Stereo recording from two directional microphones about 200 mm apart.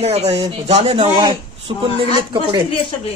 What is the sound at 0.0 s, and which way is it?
Speech, 30° right (ahead or behind).